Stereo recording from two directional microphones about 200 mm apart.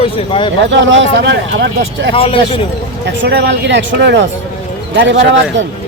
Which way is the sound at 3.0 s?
65° right (ahead or behind).